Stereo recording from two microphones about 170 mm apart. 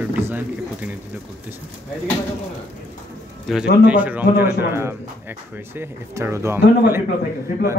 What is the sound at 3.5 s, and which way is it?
Speech, 5° right (ahead or behind).